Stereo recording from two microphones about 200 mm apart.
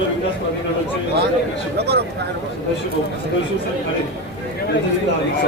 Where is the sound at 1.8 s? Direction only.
55° right (ahead or behind).